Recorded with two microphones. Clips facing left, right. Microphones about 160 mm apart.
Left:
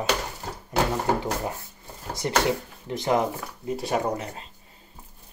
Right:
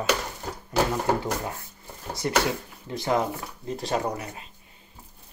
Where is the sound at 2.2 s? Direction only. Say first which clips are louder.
Left 1 dB; 25° left (ahead or behind).